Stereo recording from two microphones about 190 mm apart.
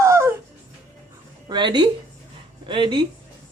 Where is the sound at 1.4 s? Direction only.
25° right (ahead or behind).